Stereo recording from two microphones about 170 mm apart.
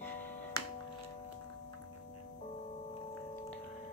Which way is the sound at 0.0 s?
10° left (ahead or behind).